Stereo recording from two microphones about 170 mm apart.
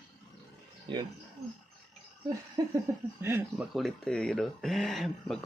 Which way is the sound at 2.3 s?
20° right (ahead or behind).